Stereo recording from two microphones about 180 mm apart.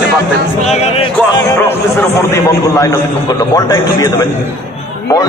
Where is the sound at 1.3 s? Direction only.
15° left (ahead or behind).